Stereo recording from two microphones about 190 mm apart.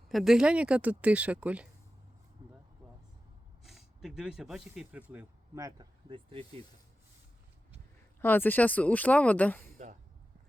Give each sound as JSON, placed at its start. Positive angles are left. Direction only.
{"t": 0.1, "sound": "speech", "side_deg": 0}
{"t": 3.6, "sound": "speech", "side_deg": 0}
{"t": 5.1, "sound": "speech", "side_deg": -15}
{"t": 8.2, "sound": "speech", "side_deg": 10}
{"t": 9.7, "sound": "speech", "side_deg": -40}